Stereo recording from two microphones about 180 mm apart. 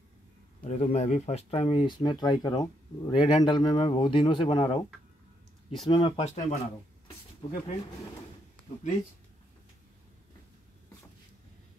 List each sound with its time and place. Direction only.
0.7 s speech: 40° left (ahead or behind)
5.9 s speech: 25° left (ahead or behind)
6.2 s speech: 40° left (ahead or behind)
7.4 s speech: 30° left (ahead or behind)